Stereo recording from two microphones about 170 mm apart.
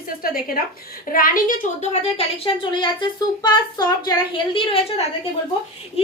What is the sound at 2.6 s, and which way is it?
A woman's voice, 25° left (ahead or behind).